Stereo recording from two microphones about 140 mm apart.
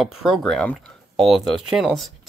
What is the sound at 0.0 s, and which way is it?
Speech, centre (ahead or behind).